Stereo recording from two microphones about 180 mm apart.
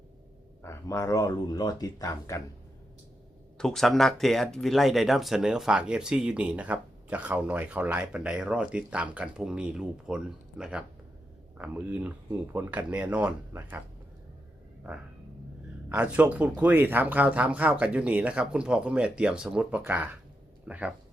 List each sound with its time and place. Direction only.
0.6 s speech: 15° left (ahead or behind)
3.6 s speech: 5° left (ahead or behind)
14.8 s speech: 5° right (ahead or behind)